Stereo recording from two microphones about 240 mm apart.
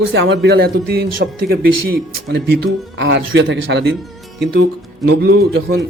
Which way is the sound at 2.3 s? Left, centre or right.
Right.